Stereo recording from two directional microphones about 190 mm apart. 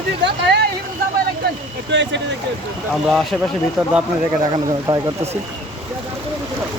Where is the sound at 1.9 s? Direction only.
70° right (ahead or behind).